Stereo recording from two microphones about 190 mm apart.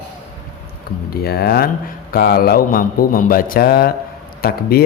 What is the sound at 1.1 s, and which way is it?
Speech, 55° left (ahead or behind).